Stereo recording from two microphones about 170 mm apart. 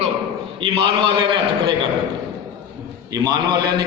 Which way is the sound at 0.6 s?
30° right (ahead or behind).